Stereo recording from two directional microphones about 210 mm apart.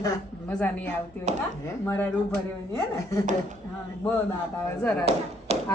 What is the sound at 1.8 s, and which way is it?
Speech, 10° left (ahead or behind).